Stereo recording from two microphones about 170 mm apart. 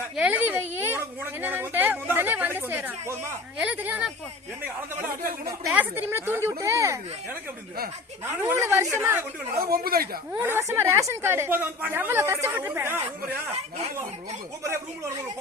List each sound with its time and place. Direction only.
0.2 s a sound: 10° right (ahead or behind)
1.2 s a woman's voice: 10° right (ahead or behind)
5.5 s a woman's voice: 10° right (ahead or behind)
8.2 s a woman's voice: 15° right (ahead or behind)
9.6 s speech: 60° right (ahead or behind)
10.3 s a woman's voice: 10° right (ahead or behind)